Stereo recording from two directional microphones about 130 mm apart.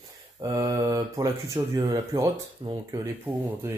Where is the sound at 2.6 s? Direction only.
40° right (ahead or behind).